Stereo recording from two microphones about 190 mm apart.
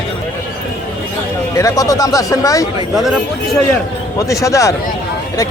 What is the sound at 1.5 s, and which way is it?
Speech, 15° left (ahead or behind).